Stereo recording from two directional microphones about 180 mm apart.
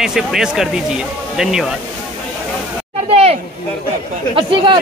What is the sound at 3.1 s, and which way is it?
Speech, 35° right (ahead or behind).